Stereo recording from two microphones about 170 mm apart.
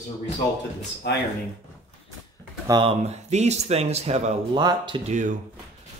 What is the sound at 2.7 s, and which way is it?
Speech, 25° right (ahead or behind).